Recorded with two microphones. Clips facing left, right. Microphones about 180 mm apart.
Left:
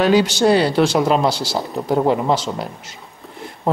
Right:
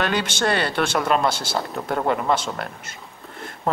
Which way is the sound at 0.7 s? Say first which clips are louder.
Left 6 dB; 55° right (ahead or behind).